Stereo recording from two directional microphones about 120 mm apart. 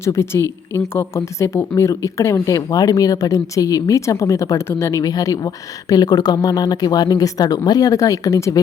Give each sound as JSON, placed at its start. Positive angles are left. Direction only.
{"t": 0.0, "sound": "speech", "side_deg": 25}